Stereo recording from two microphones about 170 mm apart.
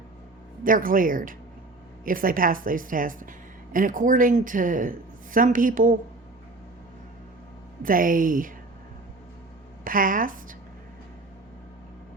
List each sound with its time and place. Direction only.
0.6 s speech: 55° right (ahead or behind)
7.8 s speech: 55° right (ahead or behind)
9.8 s a woman's voice: 55° right (ahead or behind)